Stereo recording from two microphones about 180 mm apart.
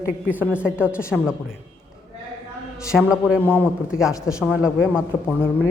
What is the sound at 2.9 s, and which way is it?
Speech, 5° right (ahead or behind).